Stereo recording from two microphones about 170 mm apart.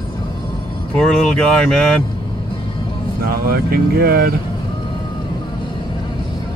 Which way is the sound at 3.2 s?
60° right (ahead or behind).